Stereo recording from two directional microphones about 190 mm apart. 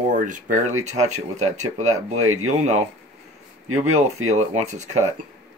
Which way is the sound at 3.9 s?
35° right (ahead or behind).